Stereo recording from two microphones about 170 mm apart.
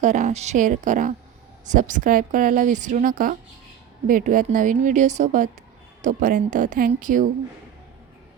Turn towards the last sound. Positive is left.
turn(degrees=-50)  # may be behind; listen again after turning